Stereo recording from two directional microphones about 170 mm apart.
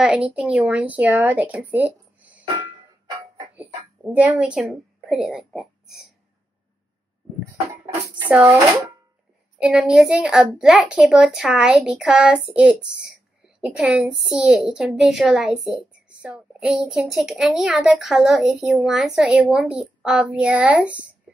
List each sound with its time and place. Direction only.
0.0 s speech: 5° right (ahead or behind)
3.5 s a woman's voice: 10° right (ahead or behind)
7.4 s speech: 20° right (ahead or behind)
8.3 s speech: 10° right (ahead or behind)
9.6 s a woman's voice: 5° right (ahead or behind)